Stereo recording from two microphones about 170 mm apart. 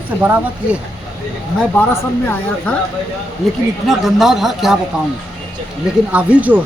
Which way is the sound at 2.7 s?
5° left (ahead or behind).